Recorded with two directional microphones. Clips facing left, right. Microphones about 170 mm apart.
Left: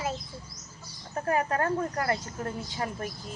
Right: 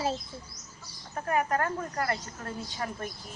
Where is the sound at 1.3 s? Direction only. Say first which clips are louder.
Left 1 dB; 30° left (ahead or behind).